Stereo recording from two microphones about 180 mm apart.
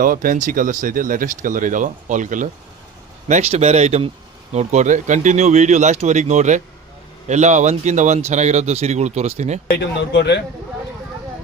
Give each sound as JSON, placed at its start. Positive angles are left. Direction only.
{"t": 0.0, "sound": "a man's voice", "side_deg": -50}
{"t": 9.7, "sound": "speech", "side_deg": 70}